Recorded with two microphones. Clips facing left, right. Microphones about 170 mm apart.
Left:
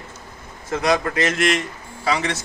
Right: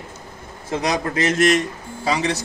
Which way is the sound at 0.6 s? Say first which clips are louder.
Left 2 dB; 30° right (ahead or behind).